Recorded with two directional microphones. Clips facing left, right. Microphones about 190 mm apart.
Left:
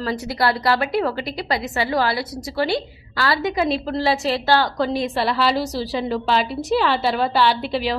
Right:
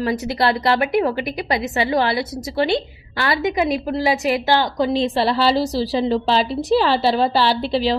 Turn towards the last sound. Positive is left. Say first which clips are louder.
# right 2 dB
turn(degrees=-30)  # may be behind; listen again after turning